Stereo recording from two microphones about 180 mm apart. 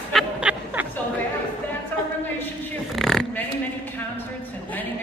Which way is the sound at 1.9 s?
10° left (ahead or behind).